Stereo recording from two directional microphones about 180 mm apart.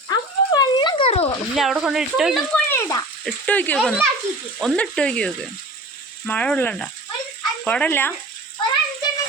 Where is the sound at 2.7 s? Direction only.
20° left (ahead or behind).